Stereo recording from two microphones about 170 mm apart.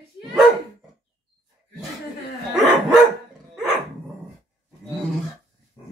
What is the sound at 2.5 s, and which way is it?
Dog, centre (ahead or behind).